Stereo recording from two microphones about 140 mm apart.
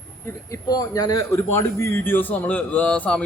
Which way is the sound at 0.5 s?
25° left (ahead or behind).